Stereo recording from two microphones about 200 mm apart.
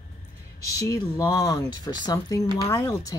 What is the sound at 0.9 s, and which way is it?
Speech, 15° left (ahead or behind).